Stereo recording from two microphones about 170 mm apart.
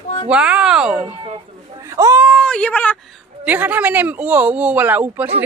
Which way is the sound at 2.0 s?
15° right (ahead or behind).